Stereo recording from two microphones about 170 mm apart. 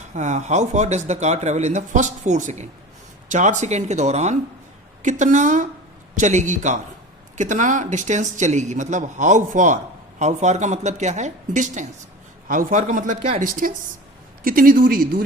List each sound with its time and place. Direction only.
0.1 s speech: 45° right (ahead or behind)